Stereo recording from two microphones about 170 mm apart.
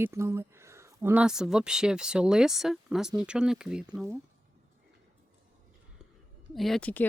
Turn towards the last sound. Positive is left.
turn(degrees=10)  # may be behind; listen again after turning